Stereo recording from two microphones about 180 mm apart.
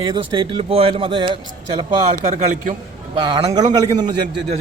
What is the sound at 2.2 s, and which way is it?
Speech, 40° right (ahead or behind).